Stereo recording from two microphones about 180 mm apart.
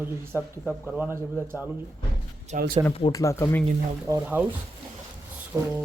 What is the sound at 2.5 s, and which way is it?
Speech, 40° right (ahead or behind).